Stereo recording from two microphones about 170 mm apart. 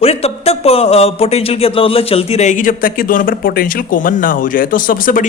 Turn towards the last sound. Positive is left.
turn(degrees=55)  # may be behind; listen again after turning